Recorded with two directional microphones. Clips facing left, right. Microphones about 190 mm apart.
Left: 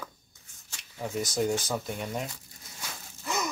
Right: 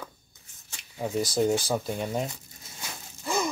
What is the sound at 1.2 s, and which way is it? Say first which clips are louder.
Speech: right 3 dB; 30° right (ahead or behind).